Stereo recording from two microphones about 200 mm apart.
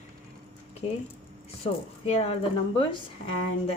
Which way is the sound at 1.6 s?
30° left (ahead or behind).